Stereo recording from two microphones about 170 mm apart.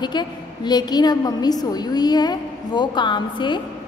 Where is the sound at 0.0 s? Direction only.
25° left (ahead or behind).